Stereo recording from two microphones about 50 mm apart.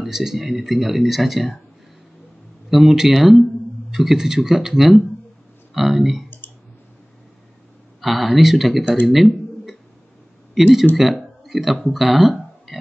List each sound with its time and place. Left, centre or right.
0.0 s speech: centre
2.7 s speech: centre
6.4 s clicking: left
8.0 s speech: centre
9.0 s a sound: centre
10.5 s speech: centre
11.1 s a sound: centre